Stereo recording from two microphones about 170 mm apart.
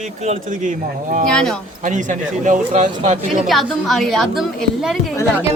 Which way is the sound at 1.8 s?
45° right (ahead or behind).